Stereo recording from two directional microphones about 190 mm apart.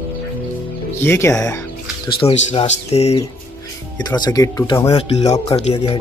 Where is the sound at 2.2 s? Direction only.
30° left (ahead or behind).